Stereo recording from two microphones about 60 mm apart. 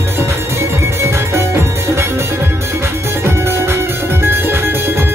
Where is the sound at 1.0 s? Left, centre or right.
Right.